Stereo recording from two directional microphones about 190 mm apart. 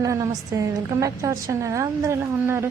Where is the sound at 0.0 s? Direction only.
15° right (ahead or behind).